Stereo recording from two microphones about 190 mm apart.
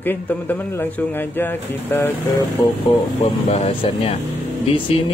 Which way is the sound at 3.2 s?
35° left (ahead or behind).